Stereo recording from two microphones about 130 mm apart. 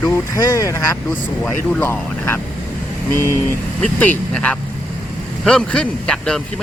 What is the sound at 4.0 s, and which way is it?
Speech, 10° left (ahead or behind).